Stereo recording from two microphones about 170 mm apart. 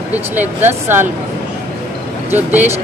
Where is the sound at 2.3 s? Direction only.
10° right (ahead or behind).